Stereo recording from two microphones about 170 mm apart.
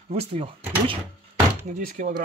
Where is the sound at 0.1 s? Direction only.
35° right (ahead or behind).